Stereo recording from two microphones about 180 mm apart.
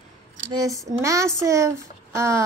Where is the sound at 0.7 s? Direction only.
20° right (ahead or behind).